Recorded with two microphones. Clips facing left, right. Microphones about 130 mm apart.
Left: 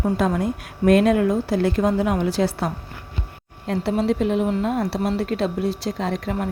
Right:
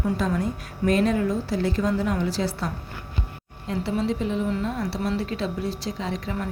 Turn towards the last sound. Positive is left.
turn(degrees=55)  # may be behind; listen again after turning